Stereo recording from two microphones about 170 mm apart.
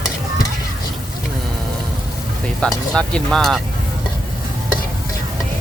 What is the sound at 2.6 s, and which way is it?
Speech, 5° left (ahead or behind).